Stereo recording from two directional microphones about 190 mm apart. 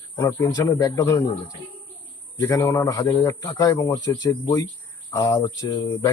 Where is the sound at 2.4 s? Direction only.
15° left (ahead or behind).